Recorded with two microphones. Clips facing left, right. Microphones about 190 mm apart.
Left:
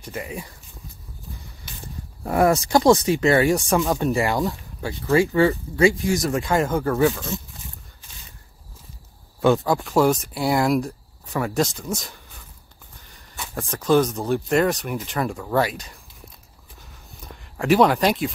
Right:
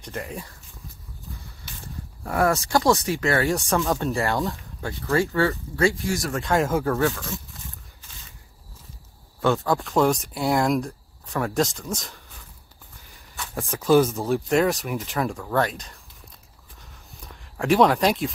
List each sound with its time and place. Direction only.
0.0 s speech: centre (ahead or behind)
1.7 s speech: 15° left (ahead or behind)
6.4 s speech: centre (ahead or behind)
7.0 s speech: 20° left (ahead or behind)
9.4 s speech: 15° left (ahead or behind)
9.8 s speech: centre (ahead or behind)
13.6 s speech: centre (ahead or behind)
17.2 s speech: centre (ahead or behind)